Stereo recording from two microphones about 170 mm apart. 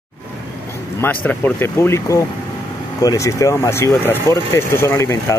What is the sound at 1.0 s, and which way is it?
Speech, 10° left (ahead or behind).